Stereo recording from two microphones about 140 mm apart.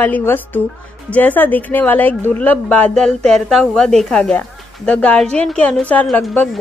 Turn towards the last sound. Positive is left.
turn(degrees=10)  # may be behind; listen again after turning